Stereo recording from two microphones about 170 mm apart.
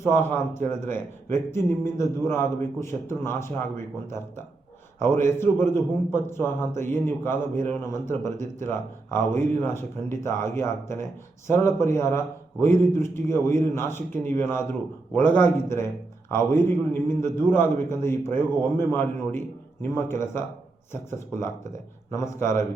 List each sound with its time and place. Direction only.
0.0 s speech: 15° left (ahead or behind)